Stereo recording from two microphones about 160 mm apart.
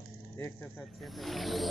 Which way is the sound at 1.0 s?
Centre (ahead or behind).